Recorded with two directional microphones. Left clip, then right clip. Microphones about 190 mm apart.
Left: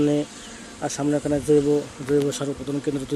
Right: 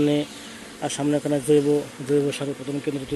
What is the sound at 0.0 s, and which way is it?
Speech, 5° left (ahead or behind).